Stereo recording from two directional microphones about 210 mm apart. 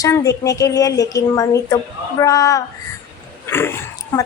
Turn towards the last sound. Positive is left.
turn(degrees=10)  # may be behind; listen again after turning